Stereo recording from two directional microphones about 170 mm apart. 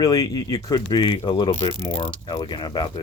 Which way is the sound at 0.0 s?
20° left (ahead or behind).